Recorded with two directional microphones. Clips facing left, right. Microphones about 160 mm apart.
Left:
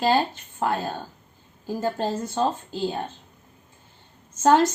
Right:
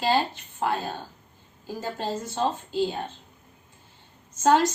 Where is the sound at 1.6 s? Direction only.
45° left (ahead or behind).